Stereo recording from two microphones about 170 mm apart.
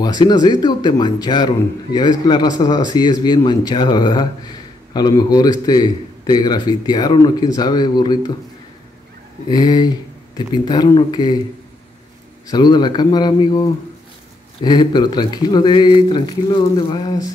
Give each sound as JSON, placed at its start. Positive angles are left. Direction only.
{"t": 0.0, "sound": "a man's voice", "side_deg": 25}
{"t": 9.5, "sound": "a man's voice", "side_deg": 25}
{"t": 12.4, "sound": "a man's voice", "side_deg": 25}